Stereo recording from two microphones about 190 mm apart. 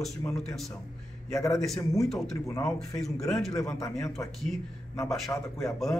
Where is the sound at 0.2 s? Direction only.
15° left (ahead or behind).